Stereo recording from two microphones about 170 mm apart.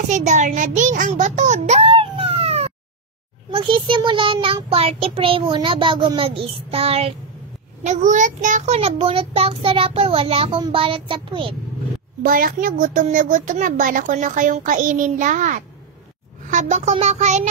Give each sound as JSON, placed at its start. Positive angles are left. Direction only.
{"t": 0.1, "sound": "a child's voice", "side_deg": -45}
{"t": 7.8, "sound": "a child's voice", "side_deg": -45}
{"t": 12.2, "sound": "a child's voice", "side_deg": -60}